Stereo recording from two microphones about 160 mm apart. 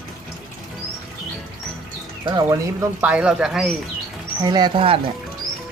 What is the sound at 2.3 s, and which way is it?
Speech, 25° right (ahead or behind).